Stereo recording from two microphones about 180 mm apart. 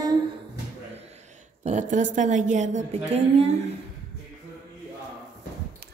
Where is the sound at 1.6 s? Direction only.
40° right (ahead or behind).